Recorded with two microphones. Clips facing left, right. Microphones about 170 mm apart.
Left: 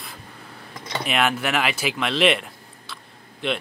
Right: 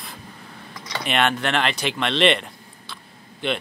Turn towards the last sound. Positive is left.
turn(degrees=0)  # may be behind; listen again after turning